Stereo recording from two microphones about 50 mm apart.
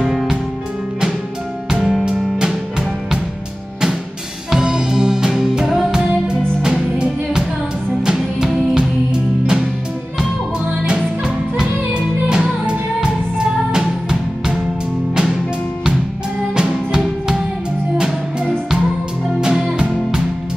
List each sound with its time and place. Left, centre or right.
0.0 s music: centre
1.7 s music: centre
2.0 s music: centre
4.5 s music: centre
10.9 s music: centre
16.5 s music: centre